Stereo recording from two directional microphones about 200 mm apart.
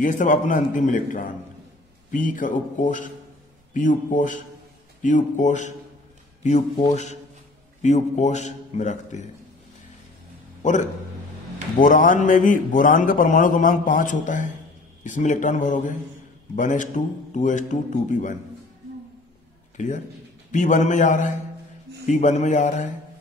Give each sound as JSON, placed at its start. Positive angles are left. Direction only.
{"t": 0.0, "sound": "a man's voice", "side_deg": 40}
{"t": 6.9, "sound": "a man's voice", "side_deg": 35}
{"t": 10.6, "sound": "a man's voice", "side_deg": 40}
{"t": 19.8, "sound": "a man's voice", "side_deg": 40}